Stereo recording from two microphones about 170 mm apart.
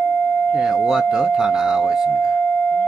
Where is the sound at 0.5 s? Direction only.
Centre (ahead or behind).